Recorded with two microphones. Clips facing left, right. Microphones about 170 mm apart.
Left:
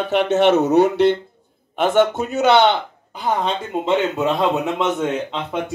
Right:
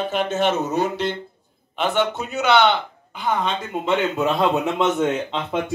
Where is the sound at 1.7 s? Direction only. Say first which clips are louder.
Left 5 dB; 45° left (ahead or behind); by 5.6 s 5° left (ahead or behind).